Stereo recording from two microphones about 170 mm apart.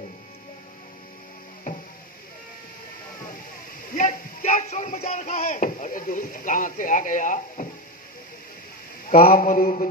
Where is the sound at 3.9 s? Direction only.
50° left (ahead or behind).